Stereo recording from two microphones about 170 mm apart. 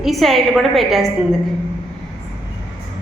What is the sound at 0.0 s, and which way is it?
A woman's voice, centre (ahead or behind).